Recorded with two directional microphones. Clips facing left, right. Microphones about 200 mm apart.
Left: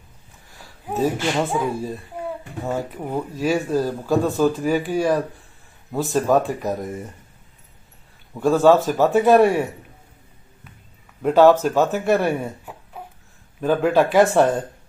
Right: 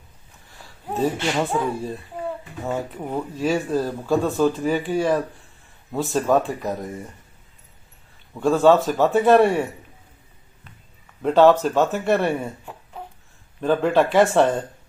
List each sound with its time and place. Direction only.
0.8 s speech: 10° left (ahead or behind)
8.4 s speech: centre (ahead or behind)
11.2 s speech: 5° left (ahead or behind)